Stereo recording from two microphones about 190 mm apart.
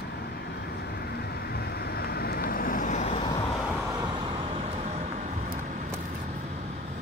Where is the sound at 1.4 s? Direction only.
55° left (ahead or behind).